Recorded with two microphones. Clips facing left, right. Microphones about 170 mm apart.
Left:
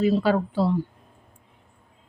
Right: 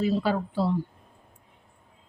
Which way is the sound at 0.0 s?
85° left.